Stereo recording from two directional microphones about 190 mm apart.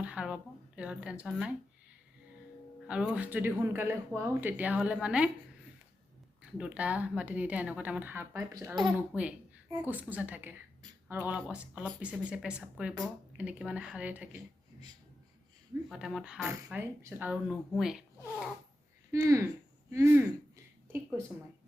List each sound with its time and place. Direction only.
0.0 s a sound: 5° right (ahead or behind)
0.8 s speech: 5° right (ahead or behind)
2.8 s speech: 5° right (ahead or behind)
6.4 s speech: 5° right (ahead or behind); by 8.9 s 20° right (ahead or behind)
9.0 s speech: 10° right (ahead or behind)
15.9 s speech: centre (ahead or behind)
19.1 s speech: 15° right (ahead or behind)